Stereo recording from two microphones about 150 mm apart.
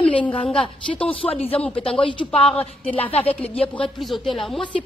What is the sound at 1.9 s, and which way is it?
Speech, 35° left (ahead or behind).